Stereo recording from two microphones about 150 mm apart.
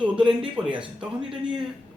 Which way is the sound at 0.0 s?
5° right (ahead or behind).